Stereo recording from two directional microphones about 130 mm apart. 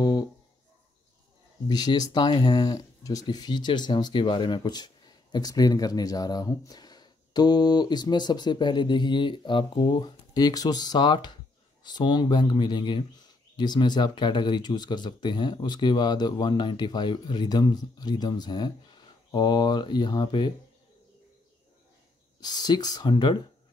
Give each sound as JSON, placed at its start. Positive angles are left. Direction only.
{"t": 1.7, "sound": "speech", "side_deg": 30}
{"t": 22.4, "sound": "speech", "side_deg": 30}